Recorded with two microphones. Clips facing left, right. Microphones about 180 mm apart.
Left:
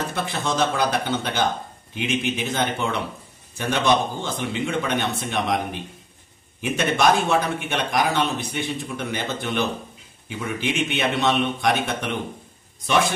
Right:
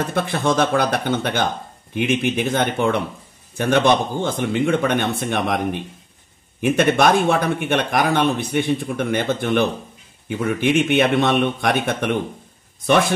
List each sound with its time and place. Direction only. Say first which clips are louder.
0.1 s a man's voice: right 6 dB; 55° right (ahead or behind)